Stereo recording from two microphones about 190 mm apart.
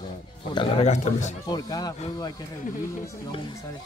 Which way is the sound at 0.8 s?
40° left (ahead or behind).